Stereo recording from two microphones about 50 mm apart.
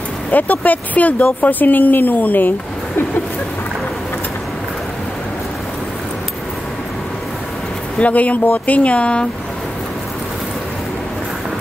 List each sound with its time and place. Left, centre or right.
0.3 s speech: left
8.0 s speech: left